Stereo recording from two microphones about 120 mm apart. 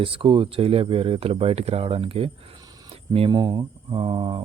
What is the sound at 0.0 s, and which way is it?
Speech, 45° right (ahead or behind).